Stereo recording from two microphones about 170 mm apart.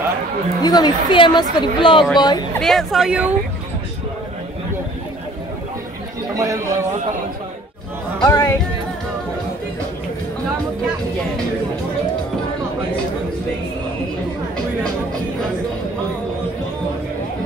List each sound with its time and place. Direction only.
0.6 s a woman's voice: 25° left (ahead or behind)
2.6 s speech: centre (ahead or behind)
6.3 s speech: 20° right (ahead or behind)
8.2 s a woman's voice: 20° left (ahead or behind)